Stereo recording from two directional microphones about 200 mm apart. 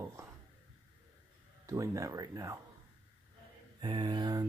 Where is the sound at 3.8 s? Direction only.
25° right (ahead or behind).